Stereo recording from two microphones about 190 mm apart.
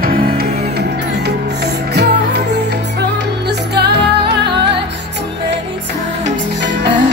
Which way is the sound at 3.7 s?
60° right (ahead or behind).